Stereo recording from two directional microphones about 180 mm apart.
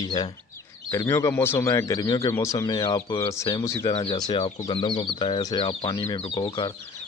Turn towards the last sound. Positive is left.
turn(degrees=25)  # may be behind; listen again after turning